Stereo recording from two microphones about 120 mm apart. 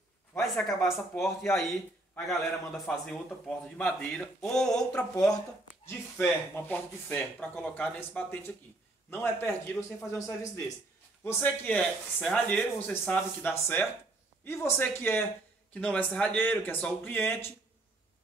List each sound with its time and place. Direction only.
0.4 s a man's voice: centre (ahead or behind); by 10.6 s 25° left (ahead or behind)
11.4 s speech: 10° left (ahead or behind)